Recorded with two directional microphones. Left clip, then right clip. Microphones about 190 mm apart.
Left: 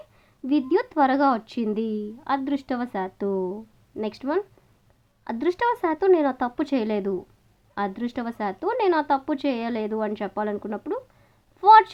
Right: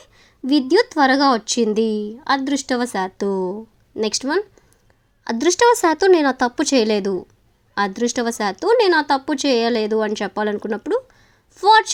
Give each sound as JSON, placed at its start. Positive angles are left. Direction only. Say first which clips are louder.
{"t": 0.2, "sound": "a woman's voice", "louder": "right 6 dB", "side_deg": -20}